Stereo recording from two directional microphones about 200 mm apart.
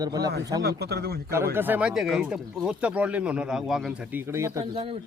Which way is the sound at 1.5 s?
10° right (ahead or behind).